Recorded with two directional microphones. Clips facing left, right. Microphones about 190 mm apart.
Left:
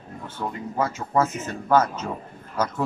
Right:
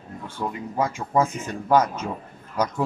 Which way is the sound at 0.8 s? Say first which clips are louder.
Right 1 dB; 10° right (ahead or behind).